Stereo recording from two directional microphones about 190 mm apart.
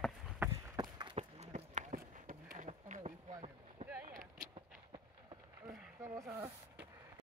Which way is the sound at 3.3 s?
30° right (ahead or behind).